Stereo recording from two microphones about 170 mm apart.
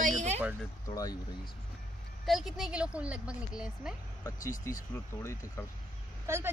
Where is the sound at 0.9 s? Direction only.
20° left (ahead or behind).